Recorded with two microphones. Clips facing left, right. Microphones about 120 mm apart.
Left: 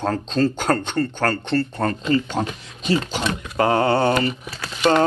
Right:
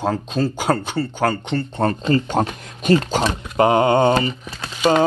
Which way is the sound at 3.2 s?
25° right (ahead or behind).